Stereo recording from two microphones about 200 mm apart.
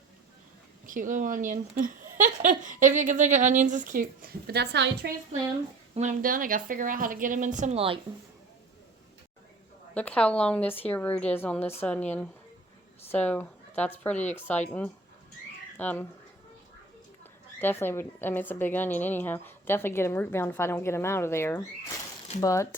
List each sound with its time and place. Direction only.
0.9 s speech: 40° right (ahead or behind); by 5.1 s 55° right (ahead or behind)
5.9 s speech: 35° right (ahead or behind)
9.9 s a woman's voice: 5° left (ahead or behind)
15.8 s a woman's voice: 10° left (ahead or behind)
17.6 s a woman's voice: 10° left (ahead or behind)